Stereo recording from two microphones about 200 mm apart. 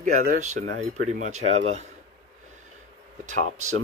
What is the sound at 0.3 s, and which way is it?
Speech, 35° right (ahead or behind).